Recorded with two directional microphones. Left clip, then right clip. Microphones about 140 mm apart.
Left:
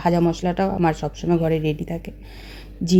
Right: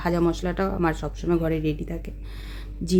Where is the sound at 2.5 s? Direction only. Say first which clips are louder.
Left 4 dB; 15° left (ahead or behind).